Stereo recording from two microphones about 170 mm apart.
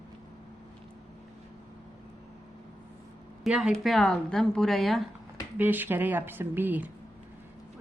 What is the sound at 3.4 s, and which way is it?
A woman's voice, 5° right (ahead or behind).